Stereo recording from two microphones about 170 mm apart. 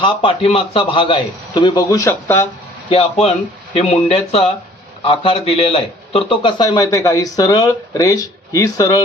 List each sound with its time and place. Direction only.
0.0 s a man's voice: 30° left (ahead or behind); by 2.5 s 15° left (ahead or behind)
2.9 s a man's voice: 35° left (ahead or behind); by 9.0 s 20° left (ahead or behind)